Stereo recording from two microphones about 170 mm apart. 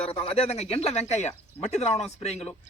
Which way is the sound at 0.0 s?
35° left (ahead or behind).